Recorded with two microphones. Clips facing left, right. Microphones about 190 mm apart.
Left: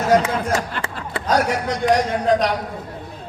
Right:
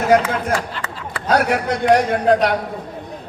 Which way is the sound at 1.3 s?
60° right (ahead or behind).